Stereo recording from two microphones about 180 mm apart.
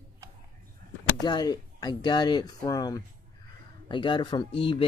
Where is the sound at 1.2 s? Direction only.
20° left (ahead or behind).